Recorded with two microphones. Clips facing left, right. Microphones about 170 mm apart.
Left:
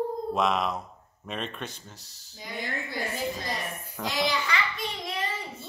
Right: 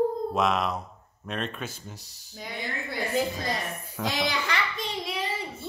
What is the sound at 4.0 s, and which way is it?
Music, centre (ahead or behind).